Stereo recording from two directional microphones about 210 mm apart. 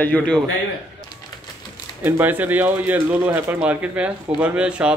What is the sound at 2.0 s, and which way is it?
Speech, 10° right (ahead or behind).